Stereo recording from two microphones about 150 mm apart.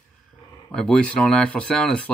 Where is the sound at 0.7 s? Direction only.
5° left (ahead or behind).